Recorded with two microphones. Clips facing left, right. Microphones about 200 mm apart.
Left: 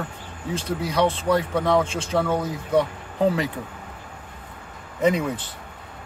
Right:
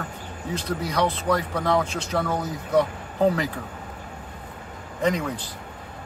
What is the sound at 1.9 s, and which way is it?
Speech, 30° left (ahead or behind).